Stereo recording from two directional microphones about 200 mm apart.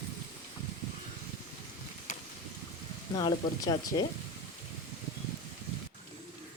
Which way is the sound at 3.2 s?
25° left (ahead or behind).